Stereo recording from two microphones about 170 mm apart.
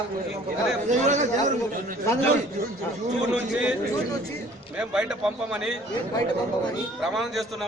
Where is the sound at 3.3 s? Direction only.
5° right (ahead or behind).